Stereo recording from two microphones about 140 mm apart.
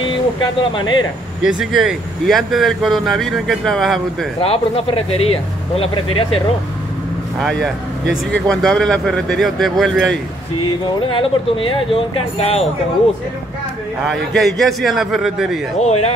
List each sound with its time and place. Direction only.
0.4 s speech: 35° left (ahead or behind)
1.4 s speech: 5° right (ahead or behind)
4.4 s speech: 45° left (ahead or behind)
7.3 s speech: centre (ahead or behind)
10.6 s speech: 40° left (ahead or behind)
14.1 s speech: centre (ahead or behind)
15.8 s speech: 50° left (ahead or behind)